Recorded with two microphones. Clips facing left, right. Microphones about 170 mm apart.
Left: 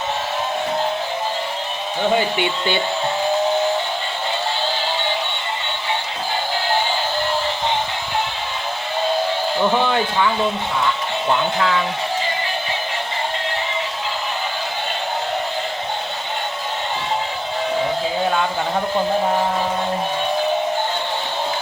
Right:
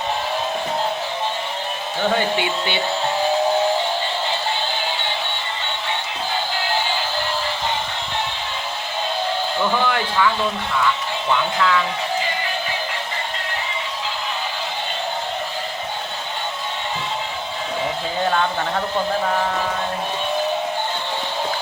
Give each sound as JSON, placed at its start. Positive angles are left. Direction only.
{"t": 9.8, "sound": "speech", "side_deg": 25}
{"t": 11.3, "sound": "speech", "side_deg": 30}